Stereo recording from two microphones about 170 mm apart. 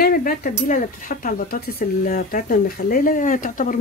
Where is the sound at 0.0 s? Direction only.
60° left (ahead or behind).